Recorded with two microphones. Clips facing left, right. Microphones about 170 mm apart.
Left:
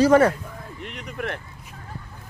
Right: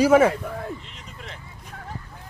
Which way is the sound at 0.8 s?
65° left (ahead or behind).